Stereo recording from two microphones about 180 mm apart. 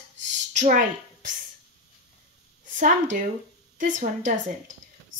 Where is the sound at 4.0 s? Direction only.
45° right (ahead or behind).